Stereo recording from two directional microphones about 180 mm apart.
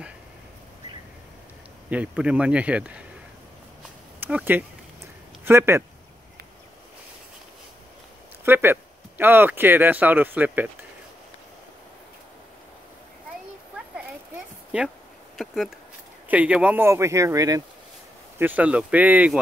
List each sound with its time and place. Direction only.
1.9 s speech: 5° right (ahead or behind)
4.2 s speech: 10° right (ahead or behind)
8.5 s speech: 15° right (ahead or behind)
15.3 s speech: centre (ahead or behind)